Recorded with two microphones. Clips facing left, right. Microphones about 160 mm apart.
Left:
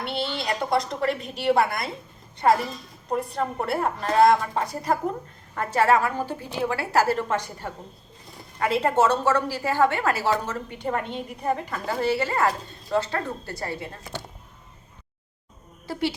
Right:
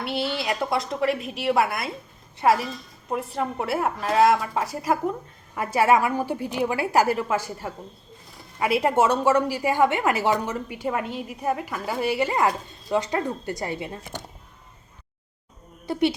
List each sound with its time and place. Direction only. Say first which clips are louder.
0.0 s a woman's voice: right 2 dB; 5° right (ahead or behind)
15.9 s a woman's voice: right 5 dB; 20° right (ahead or behind)